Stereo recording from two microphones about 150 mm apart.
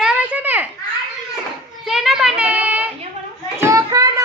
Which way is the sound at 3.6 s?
20° right (ahead or behind).